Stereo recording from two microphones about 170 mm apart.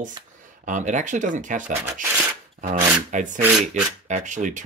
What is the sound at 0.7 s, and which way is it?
Speech, 45° right (ahead or behind).